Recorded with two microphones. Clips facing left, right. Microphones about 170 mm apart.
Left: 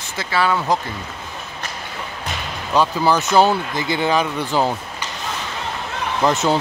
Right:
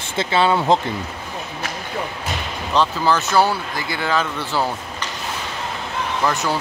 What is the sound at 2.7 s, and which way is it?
Speech, 10° left (ahead or behind).